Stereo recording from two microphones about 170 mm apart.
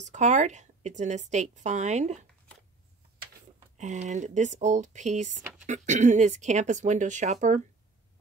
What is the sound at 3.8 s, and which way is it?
Speech, 45° right (ahead or behind).